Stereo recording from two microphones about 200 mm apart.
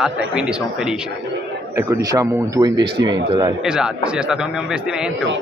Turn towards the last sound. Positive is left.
turn(degrees=-5)  # may be behind; listen again after turning